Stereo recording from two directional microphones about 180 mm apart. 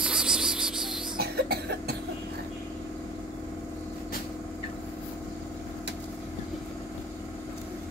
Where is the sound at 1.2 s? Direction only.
60° right (ahead or behind).